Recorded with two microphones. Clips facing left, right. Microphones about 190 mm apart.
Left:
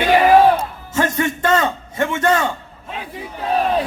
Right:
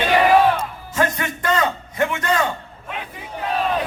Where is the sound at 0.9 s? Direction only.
25° left (ahead or behind).